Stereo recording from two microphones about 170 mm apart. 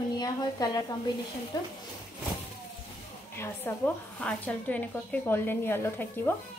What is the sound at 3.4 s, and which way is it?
A woman's voice, 10° left (ahead or behind).